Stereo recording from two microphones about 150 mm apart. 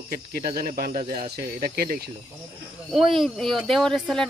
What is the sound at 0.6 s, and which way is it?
Speech, 80° right.